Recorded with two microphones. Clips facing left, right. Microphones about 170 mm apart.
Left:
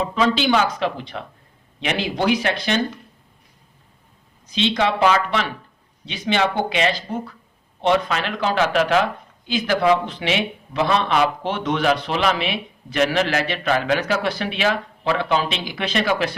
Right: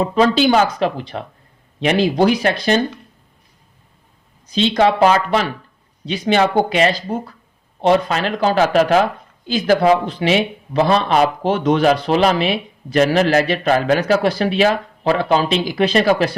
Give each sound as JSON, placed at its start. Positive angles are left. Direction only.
{"t": 0.0, "sound": "speech", "side_deg": -40}
{"t": 4.5, "sound": "speech", "side_deg": -40}